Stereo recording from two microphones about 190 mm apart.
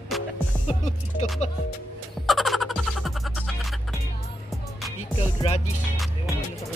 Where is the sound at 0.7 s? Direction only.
35° left (ahead or behind).